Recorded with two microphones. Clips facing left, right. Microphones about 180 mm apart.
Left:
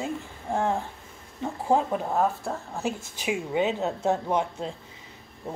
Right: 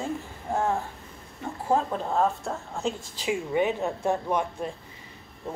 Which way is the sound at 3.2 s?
15° left (ahead or behind).